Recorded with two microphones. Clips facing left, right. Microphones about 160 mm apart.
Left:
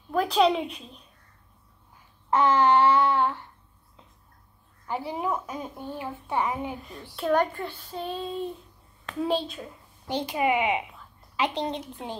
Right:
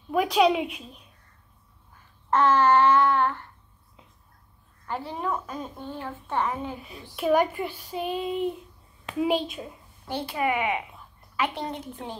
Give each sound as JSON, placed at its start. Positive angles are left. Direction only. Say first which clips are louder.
{"t": 0.1, "sound": "a woman's voice", "louder": "right 1 dB", "side_deg": -10}
{"t": 2.3, "sound": "a child's voice", "louder": "right 1 dB", "side_deg": 15}
{"t": 4.8, "sound": "a child's voice", "louder": "left 1 dB", "side_deg": 10}
{"t": 6.8, "sound": "a child's voice", "louder": "right 2 dB", "side_deg": -10}
{"t": 10.0, "sound": "a child's voice", "louder": "left 2 dB", "side_deg": 15}